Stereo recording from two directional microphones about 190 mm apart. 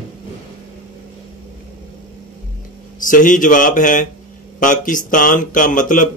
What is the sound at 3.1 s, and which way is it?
Speech, 45° left (ahead or behind).